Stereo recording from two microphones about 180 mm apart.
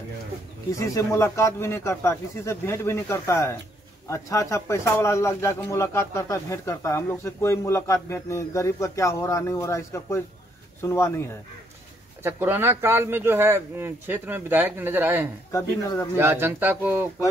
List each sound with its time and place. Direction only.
0.7 s a man's voice: 15° left (ahead or behind)
12.2 s speech: 10° right (ahead or behind)
15.5 s speech: 20° left (ahead or behind)
16.2 s speech: 10° right (ahead or behind)